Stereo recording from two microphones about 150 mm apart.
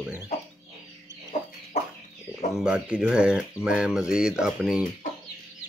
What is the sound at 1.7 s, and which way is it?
Chicken, 50° left (ahead or behind).